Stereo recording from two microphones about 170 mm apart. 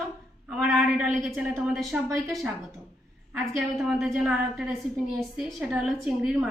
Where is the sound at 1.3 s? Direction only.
Centre (ahead or behind).